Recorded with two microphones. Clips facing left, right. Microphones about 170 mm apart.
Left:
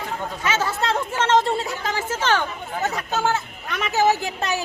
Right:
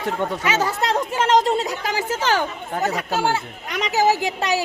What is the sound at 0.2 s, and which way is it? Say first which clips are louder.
Speech: right 7 dB; 70° right (ahead or behind).